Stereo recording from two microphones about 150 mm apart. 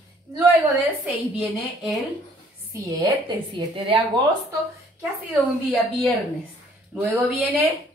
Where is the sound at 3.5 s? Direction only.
35° right (ahead or behind).